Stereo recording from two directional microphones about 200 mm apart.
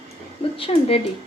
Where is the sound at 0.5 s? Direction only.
25° left (ahead or behind).